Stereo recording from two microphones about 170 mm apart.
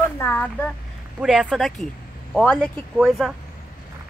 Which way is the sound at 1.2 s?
5° right (ahead or behind).